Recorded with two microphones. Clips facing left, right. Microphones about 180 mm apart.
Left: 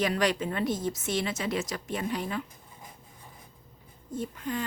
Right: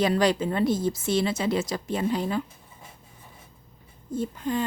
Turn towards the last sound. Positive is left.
turn(degrees=-30)  # may be behind; listen again after turning